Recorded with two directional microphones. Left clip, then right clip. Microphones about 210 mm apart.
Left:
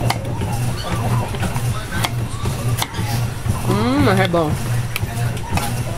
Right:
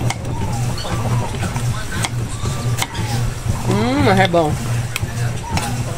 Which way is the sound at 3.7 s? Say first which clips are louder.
Right 1 dB; 15° left (ahead or behind).